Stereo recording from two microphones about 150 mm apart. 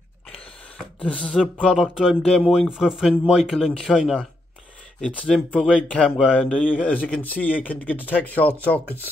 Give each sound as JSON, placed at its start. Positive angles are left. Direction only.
{"t": 1.0, "sound": "speech", "side_deg": 5}
{"t": 6.3, "sound": "speech", "side_deg": 10}